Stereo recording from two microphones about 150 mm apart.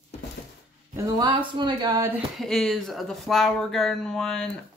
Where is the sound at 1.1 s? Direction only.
30° right (ahead or behind).